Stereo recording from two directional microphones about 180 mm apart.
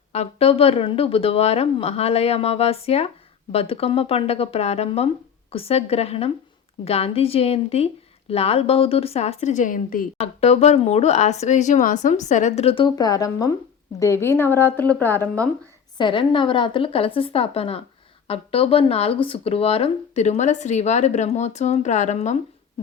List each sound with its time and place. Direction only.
0.1 s speech: 35° left (ahead or behind)
10.2 s a woman's voice: 35° left (ahead or behind); by 15.4 s 10° left (ahead or behind)
16.0 s speech: 25° left (ahead or behind)